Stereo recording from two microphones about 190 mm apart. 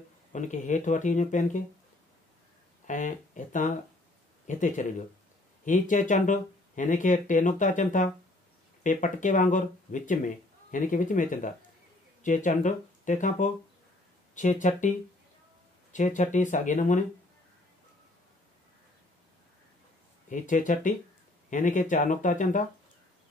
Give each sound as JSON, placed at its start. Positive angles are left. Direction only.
{"t": 0.3, "sound": "speech", "side_deg": 40}
{"t": 2.9, "sound": "speech", "side_deg": 40}
{"t": 15.9, "sound": "speech", "side_deg": 40}
{"t": 20.2, "sound": "speech", "side_deg": 40}